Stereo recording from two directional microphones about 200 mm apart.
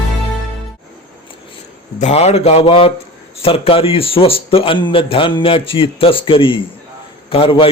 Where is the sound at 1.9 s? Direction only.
35° left (ahead or behind).